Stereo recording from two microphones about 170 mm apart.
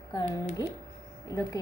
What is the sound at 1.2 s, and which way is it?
Speech, 20° left (ahead or behind).